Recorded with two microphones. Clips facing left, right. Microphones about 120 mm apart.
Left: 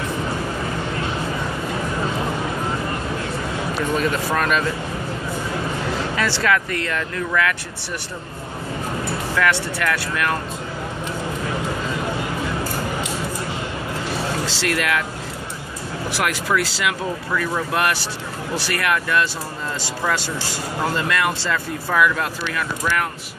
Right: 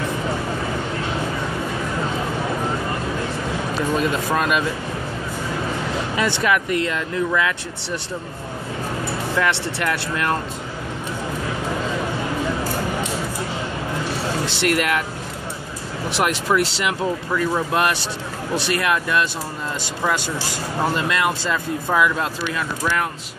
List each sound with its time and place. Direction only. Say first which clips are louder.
3.9 s speech: right 1 dB; 20° right (ahead or behind)
6.1 s speech: right 1 dB; 20° right (ahead or behind)
9.3 s speech: left 1 dB; 25° right (ahead or behind)
14.4 s speech: right 2 dB; 20° right (ahead or behind)
16.1 s speech: right 2 dB; 25° right (ahead or behind)